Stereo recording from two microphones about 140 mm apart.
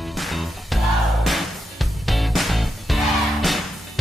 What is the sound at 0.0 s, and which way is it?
Music, centre (ahead or behind).